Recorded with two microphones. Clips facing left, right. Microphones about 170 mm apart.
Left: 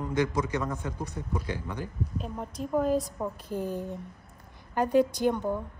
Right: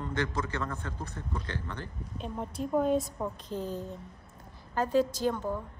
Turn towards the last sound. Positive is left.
turn(degrees=15)  # may be behind; listen again after turning